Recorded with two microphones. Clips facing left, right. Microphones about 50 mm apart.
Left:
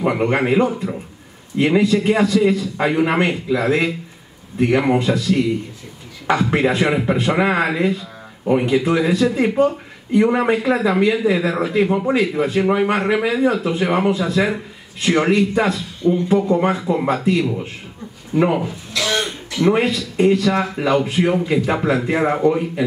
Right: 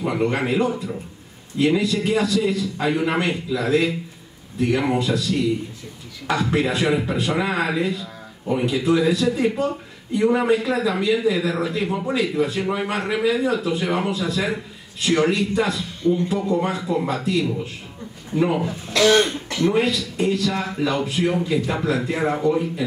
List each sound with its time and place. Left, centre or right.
0.0 s speech: left
18.3 s speech: left
18.9 s cough: right
19.6 s speech: left